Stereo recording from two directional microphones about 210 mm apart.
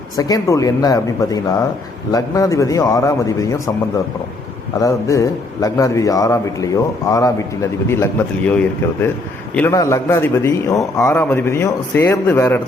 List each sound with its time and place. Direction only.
0.2 s a man's voice: 15° left (ahead or behind)
4.8 s a man's voice: 15° left (ahead or behind)